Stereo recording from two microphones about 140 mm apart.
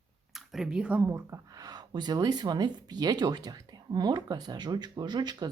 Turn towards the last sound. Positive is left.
turn(degrees=-30)  # may be behind; listen again after turning